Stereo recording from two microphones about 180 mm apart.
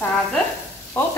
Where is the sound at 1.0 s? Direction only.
15° left (ahead or behind).